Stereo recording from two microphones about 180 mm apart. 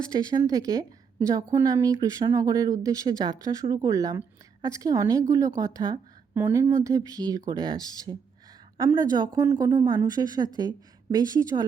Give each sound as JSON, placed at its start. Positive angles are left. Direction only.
{"t": 0.1, "sound": "a woman's voice", "side_deg": -20}